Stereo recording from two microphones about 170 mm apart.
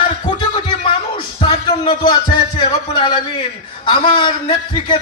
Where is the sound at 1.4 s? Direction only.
30° left (ahead or behind).